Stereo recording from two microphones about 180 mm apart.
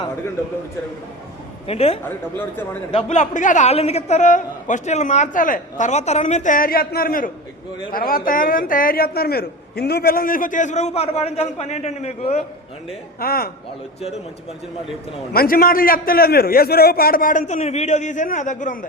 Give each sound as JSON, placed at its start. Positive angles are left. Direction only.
{"t": 1.6, "sound": "a man's voice", "side_deg": 35}
{"t": 13.1, "sound": "a man's voice", "side_deg": 55}
{"t": 15.3, "sound": "a man's voice", "side_deg": 55}